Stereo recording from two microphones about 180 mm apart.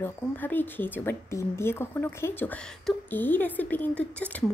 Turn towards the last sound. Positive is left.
turn(degrees=10)  # may be behind; listen again after turning